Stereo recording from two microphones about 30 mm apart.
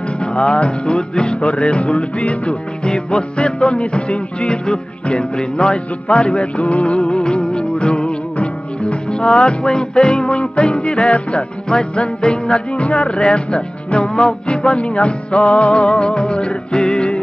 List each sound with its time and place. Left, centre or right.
0.2 s music: left
2.9 s music: left
15.8 s music: left